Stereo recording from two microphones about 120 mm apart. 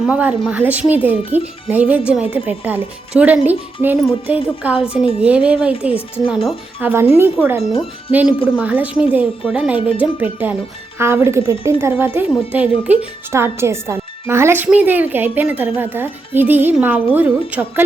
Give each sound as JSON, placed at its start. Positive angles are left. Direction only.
{"t": 0.0, "sound": "speech", "side_deg": -10}
{"t": 6.7, "sound": "speech", "side_deg": -20}
{"t": 8.1, "sound": "speech", "side_deg": -10}